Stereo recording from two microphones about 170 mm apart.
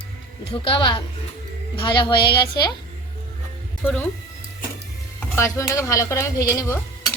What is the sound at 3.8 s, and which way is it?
Speech, 10° left (ahead or behind).